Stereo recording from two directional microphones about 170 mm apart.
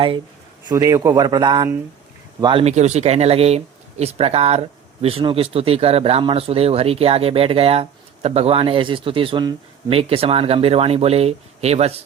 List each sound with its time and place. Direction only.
0.7 s speech: 20° right (ahead or behind); by 11.9 s 40° right (ahead or behind)